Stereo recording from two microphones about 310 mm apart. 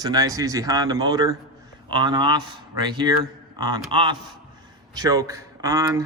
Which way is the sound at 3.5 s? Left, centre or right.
Centre.